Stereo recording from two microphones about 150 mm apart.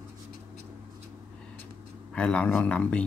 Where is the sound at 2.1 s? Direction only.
5° left (ahead or behind).